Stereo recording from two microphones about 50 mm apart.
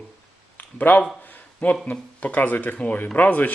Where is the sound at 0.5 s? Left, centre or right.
Left.